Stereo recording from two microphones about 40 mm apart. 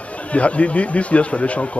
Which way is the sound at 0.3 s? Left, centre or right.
Left.